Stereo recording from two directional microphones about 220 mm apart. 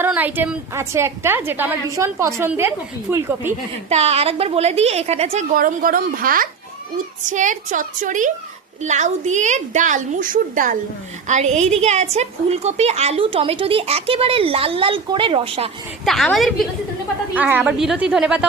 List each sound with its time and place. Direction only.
0.0 s a woman's voice: 10° right (ahead or behind)
3.8 s a woman's voice: 30° right (ahead or behind)
16.0 s a woman's voice: centre (ahead or behind)